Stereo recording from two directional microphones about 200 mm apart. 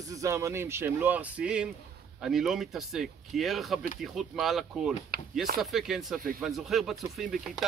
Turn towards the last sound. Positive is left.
turn(degrees=0)  # may be behind; listen again after turning